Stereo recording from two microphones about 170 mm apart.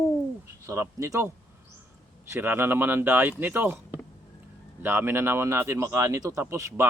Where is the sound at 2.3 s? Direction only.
15° right (ahead or behind).